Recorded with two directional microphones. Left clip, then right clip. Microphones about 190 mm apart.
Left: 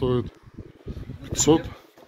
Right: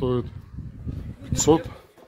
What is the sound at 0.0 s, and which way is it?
Speech, centre (ahead or behind).